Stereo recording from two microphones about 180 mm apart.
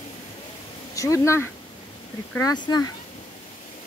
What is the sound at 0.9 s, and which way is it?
Speech, 15° left (ahead or behind).